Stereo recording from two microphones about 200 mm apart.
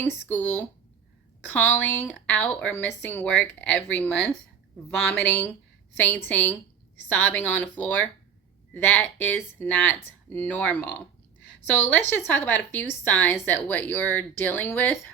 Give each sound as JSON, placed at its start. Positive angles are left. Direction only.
{"t": 0.0, "sound": "a woman's voice", "side_deg": 5}